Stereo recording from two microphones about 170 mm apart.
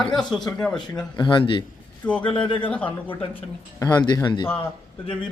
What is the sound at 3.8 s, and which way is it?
Speech, 25° left (ahead or behind).